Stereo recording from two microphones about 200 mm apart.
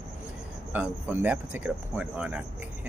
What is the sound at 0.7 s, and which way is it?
Speech, 10° right (ahead or behind).